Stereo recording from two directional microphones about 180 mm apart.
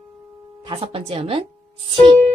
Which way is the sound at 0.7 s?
30° right (ahead or behind).